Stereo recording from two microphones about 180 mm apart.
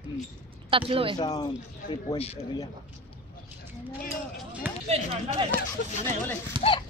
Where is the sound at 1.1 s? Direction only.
20° left (ahead or behind).